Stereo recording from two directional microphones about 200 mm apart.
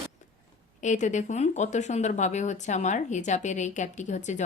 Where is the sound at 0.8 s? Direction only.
35° left (ahead or behind).